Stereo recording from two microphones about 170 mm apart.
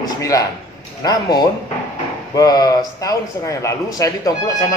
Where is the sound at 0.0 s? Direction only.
20° left (ahead or behind).